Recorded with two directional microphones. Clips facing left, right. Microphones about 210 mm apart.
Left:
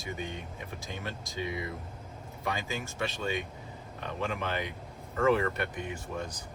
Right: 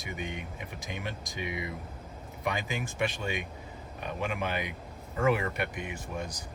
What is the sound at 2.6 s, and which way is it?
Speech, 15° right (ahead or behind).